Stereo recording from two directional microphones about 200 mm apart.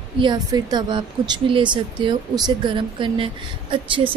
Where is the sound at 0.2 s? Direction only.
20° right (ahead or behind).